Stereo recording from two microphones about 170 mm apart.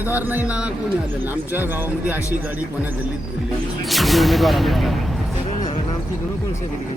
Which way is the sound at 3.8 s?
Centre (ahead or behind).